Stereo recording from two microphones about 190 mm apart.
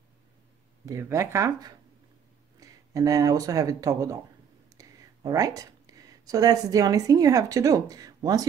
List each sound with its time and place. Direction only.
0.8 s speech: 15° right (ahead or behind)